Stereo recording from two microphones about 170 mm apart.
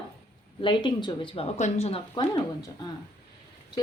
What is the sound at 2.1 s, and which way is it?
Speech, 25° left (ahead or behind).